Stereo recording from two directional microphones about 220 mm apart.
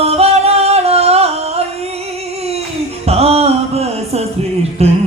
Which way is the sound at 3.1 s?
30° right (ahead or behind).